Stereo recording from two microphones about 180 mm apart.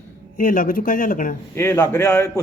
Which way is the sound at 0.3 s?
50° left (ahead or behind).